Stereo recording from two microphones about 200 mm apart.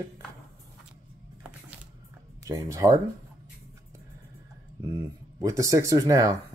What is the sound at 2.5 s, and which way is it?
Speech, 15° right (ahead or behind).